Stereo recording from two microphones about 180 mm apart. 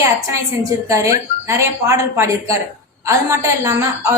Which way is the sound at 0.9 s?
15° right (ahead or behind).